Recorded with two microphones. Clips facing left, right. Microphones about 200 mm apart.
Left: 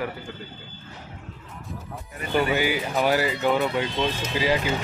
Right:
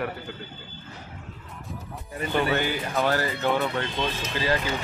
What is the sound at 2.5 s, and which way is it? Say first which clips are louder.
Speech: left 2 dB; 10° left (ahead or behind).